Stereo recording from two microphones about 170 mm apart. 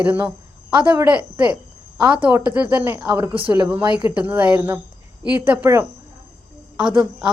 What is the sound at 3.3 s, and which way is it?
Speech, 30° right (ahead or behind).